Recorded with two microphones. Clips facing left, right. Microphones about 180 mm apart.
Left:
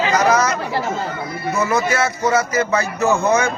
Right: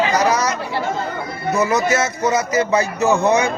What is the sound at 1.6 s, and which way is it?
A man's voice, 20° right (ahead or behind).